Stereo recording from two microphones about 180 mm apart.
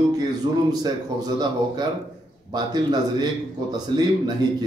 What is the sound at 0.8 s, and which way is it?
A man's voice, 20° right (ahead or behind).